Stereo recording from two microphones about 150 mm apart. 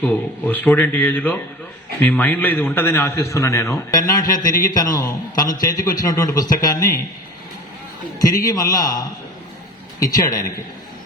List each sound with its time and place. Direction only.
0.0 s a man's voice: 10° left (ahead or behind)
8.2 s a man's voice: 25° left (ahead or behind)